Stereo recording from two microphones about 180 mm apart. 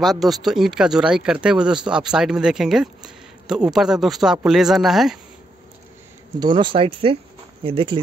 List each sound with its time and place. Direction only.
0.0 s speech: centre (ahead or behind)
6.4 s speech: 25° right (ahead or behind)